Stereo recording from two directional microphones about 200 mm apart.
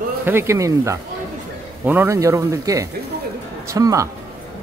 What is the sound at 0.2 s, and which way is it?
A man's voice, 10° right (ahead or behind).